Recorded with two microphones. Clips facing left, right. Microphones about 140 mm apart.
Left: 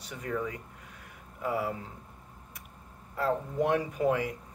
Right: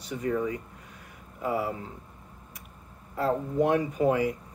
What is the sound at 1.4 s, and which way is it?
Speech, 5° right (ahead or behind).